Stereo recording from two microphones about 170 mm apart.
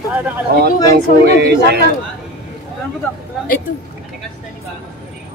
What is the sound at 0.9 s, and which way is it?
Speech, 75° right (ahead or behind).